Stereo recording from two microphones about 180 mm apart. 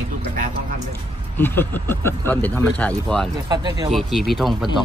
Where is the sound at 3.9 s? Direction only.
Centre (ahead or behind).